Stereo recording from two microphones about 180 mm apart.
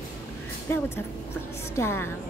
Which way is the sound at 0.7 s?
15° left (ahead or behind).